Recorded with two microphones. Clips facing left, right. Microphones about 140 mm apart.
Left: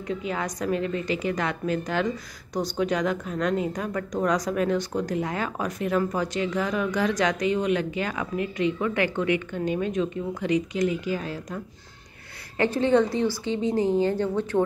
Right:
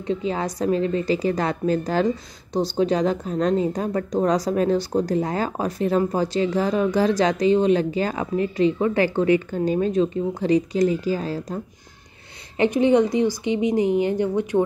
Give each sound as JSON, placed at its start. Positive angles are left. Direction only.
{"t": 0.0, "sound": "a woman's voice", "side_deg": -30}
{"t": 12.5, "sound": "a woman's voice", "side_deg": -15}